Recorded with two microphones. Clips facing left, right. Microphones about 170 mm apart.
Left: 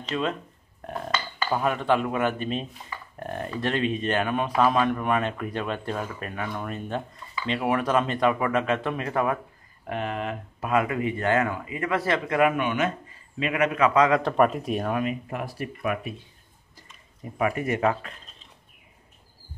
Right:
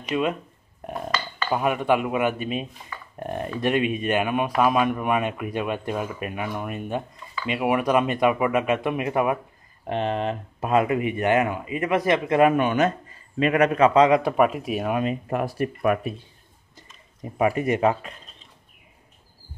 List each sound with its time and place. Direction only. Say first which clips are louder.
0.0 s speech: right 3 dB; 10° right (ahead or behind)
1.5 s speech: right 2 dB; 10° right (ahead or behind)
9.8 s speech: right 5 dB; 25° right (ahead or behind)
12.4 s a man's voice: right 4 dB; 35° right (ahead or behind)
14.2 s speech: right 1 dB; 5° right (ahead or behind)
15.2 s speech: right 7 dB; 45° right (ahead or behind)
17.2 s speech: right 4 dB; 20° right (ahead or behind)